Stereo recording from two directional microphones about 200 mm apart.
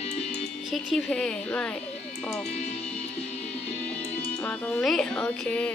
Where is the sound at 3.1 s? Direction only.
30° left (ahead or behind).